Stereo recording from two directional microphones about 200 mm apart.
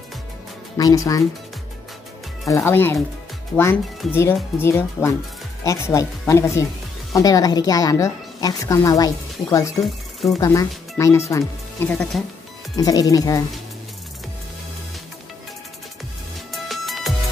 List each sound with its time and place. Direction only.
0.7 s a woman's voice: 20° left (ahead or behind)
2.4 s a woman's voice: 15° left (ahead or behind)
12.7 s a woman's voice: 20° left (ahead or behind)
16.5 s music: centre (ahead or behind)